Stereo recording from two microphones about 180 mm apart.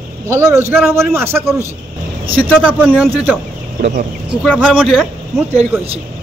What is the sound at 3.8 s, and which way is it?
Speech, 65° right (ahead or behind).